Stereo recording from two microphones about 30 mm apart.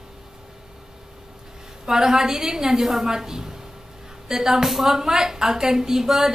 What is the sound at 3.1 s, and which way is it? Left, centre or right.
A woman's voice, centre.